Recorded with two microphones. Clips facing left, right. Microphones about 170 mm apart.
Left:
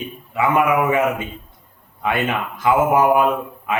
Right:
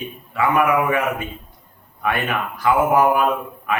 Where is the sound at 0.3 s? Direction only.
20° left (ahead or behind).